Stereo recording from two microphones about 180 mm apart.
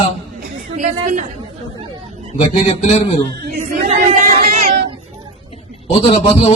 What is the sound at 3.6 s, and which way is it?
Choir, 45° right (ahead or behind).